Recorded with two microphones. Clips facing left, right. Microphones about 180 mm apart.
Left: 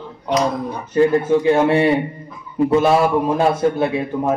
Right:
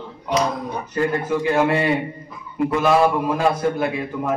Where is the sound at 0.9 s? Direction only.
25° left (ahead or behind).